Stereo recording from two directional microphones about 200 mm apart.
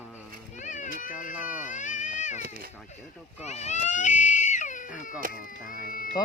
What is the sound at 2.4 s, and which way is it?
Cat, 45° right (ahead or behind).